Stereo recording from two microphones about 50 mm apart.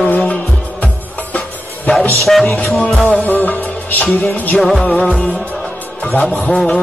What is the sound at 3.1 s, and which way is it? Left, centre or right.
Music, left.